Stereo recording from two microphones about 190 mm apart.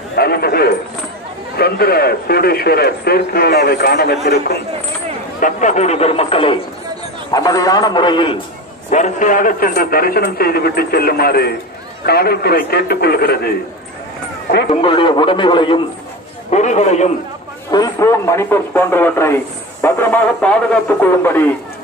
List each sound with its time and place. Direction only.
0.1 s a sound: 55° left (ahead or behind)
1.6 s a man's voice: 55° left (ahead or behind)
5.4 s a man's voice: 40° left (ahead or behind)
8.9 s a man's voice: 40° left (ahead or behind)
14.7 s a man's voice: 30° left (ahead or behind)
16.4 s speech: 40° left (ahead or behind)
17.6 s a man's voice: 20° left (ahead or behind)